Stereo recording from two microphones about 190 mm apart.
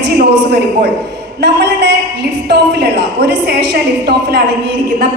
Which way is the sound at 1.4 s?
65° right (ahead or behind).